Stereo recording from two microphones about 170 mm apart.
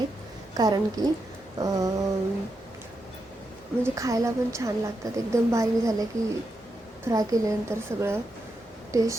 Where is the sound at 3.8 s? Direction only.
20° right (ahead or behind).